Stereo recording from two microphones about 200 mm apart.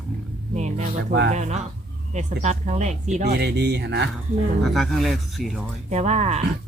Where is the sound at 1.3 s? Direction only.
35° right (ahead or behind).